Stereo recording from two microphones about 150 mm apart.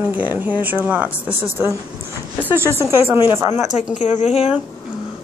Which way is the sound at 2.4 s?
15° right (ahead or behind).